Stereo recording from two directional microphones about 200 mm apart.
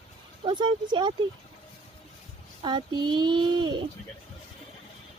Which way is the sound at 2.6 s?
20° right (ahead or behind).